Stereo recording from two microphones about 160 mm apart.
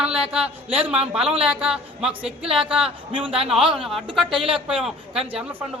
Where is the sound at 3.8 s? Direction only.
Centre (ahead or behind).